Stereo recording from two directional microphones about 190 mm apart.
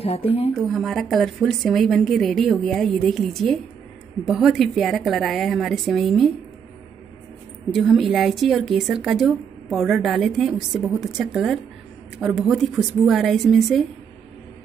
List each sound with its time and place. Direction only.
0.0 s speech: 30° left (ahead or behind)
0.6 s a woman's voice: centre (ahead or behind)
7.7 s a woman's voice: centre (ahead or behind)